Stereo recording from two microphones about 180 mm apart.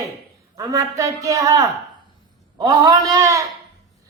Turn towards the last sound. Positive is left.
turn(degrees=-15)  # may be behind; listen again after turning